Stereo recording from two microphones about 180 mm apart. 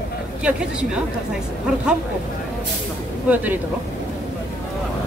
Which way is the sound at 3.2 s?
10° right (ahead or behind).